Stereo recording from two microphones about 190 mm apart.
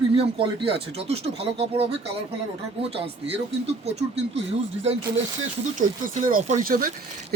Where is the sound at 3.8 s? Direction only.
35° right (ahead or behind).